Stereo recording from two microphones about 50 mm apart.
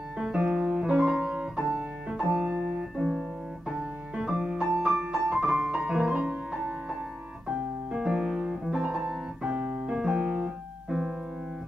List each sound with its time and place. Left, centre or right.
0.2 s piano: centre
2.6 s music: centre
5.1 s piano: right
7.4 s piano: centre
10.9 s piano: centre